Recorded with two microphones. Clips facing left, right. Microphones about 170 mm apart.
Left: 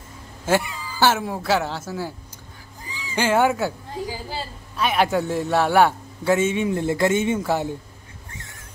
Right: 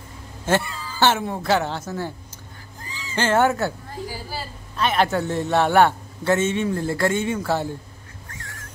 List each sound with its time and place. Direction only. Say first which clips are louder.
0.5 s a man's voice: left 1 dB; 15° left (ahead or behind)
2.8 s a sound: left 1 dB; 10° left (ahead or behind)
4.7 s a man's voice: even; 10° left (ahead or behind)
8.3 s dog: right 1 dB; 25° left (ahead or behind)